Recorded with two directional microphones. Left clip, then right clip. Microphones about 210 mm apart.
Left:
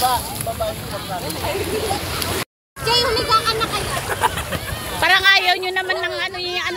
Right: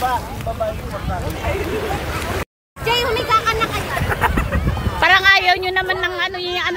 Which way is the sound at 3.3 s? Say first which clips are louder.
Right 3 dB; 10° right (ahead or behind).